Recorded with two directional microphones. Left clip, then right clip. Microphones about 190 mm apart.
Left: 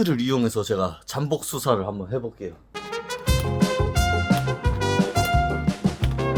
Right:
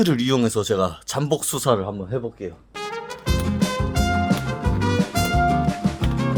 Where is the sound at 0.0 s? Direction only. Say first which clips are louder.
Right 3 dB; 25° right (ahead or behind).